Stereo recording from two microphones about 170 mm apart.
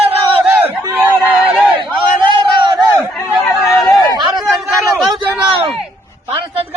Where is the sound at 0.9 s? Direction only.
10° right (ahead or behind).